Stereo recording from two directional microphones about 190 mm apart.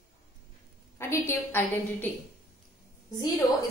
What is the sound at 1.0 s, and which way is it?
A woman's voice, 15° left (ahead or behind).